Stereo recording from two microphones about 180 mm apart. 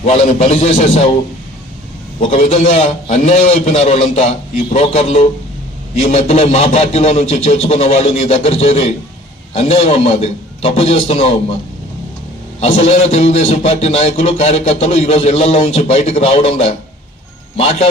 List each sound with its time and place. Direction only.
0.0 s a man's voice: 35° left (ahead or behind)
2.2 s a man's voice: 35° left (ahead or behind)
12.5 s a man's voice: 35° left (ahead or behind)